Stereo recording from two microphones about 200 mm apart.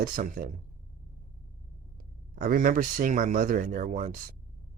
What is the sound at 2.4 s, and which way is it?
Speech, 40° right (ahead or behind).